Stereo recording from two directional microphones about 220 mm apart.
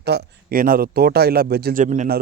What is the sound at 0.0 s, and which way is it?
A man's voice, 50° right (ahead or behind).